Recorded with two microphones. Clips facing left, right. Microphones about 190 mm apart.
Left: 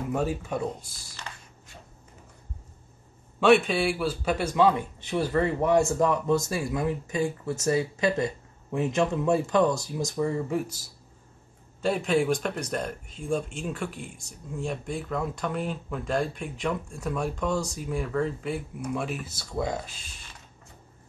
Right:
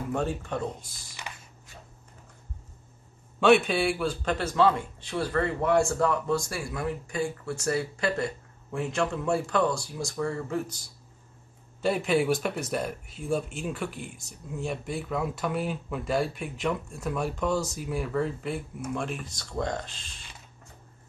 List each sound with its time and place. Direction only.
0.1 s a man's voice: 5° left (ahead or behind)
1.3 s a sound: 15° right (ahead or behind)
3.3 s a man's voice: centre (ahead or behind)